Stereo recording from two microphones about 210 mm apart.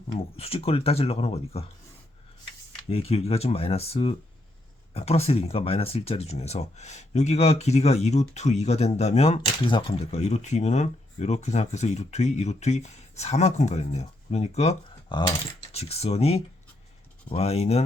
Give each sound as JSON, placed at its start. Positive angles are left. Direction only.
{"t": 0.1, "sound": "speech", "side_deg": 30}
{"t": 2.9, "sound": "speech", "side_deg": 30}